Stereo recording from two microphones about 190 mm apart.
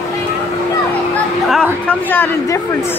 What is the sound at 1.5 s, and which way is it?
Chatter, 10° left (ahead or behind).